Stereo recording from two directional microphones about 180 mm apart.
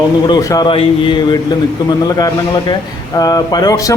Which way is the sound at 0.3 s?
20° left (ahead or behind).